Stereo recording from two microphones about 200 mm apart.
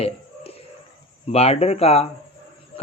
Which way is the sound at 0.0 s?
30° left (ahead or behind).